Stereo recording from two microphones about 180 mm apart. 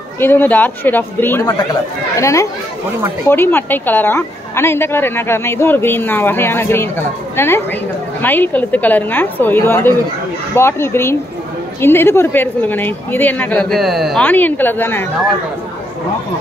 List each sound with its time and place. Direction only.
0.2 s a woman's voice: 10° left (ahead or behind)
14.2 s a woman's voice: 10° left (ahead or behind)